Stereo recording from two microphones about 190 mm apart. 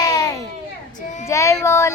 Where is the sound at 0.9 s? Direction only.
40° left (ahead or behind).